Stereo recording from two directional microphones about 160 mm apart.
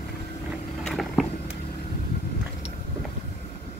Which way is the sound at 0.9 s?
Centre (ahead or behind).